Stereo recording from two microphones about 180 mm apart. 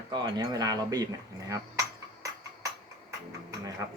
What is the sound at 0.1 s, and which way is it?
Speech, 25° right (ahead or behind).